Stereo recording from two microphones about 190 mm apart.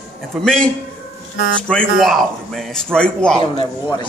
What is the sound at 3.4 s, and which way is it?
Speech, 25° left (ahead or behind).